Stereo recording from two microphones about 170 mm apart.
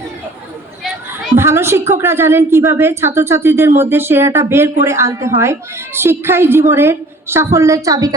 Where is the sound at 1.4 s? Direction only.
15° right (ahead or behind).